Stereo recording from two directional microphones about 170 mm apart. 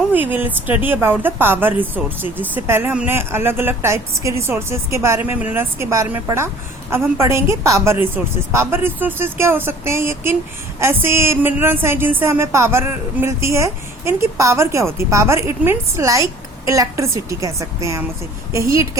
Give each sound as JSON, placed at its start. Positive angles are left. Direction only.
{"t": 0.1, "sound": "speech", "side_deg": -10}